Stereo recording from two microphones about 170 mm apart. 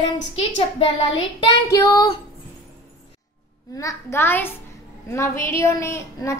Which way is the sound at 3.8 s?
15° left (ahead or behind).